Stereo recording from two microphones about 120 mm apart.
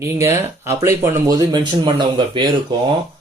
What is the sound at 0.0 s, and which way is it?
Speech, 25° right (ahead or behind).